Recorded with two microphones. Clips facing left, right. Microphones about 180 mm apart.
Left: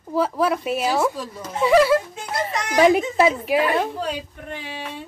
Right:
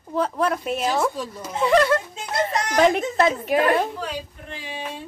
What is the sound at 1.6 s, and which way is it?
A woman's voice, 5° left (ahead or behind).